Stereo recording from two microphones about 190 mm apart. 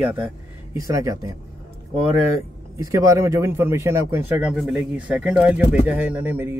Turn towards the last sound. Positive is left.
turn(degrees=-10)  # may be behind; listen again after turning